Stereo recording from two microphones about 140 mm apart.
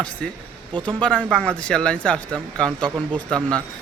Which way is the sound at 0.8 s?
35° right (ahead or behind).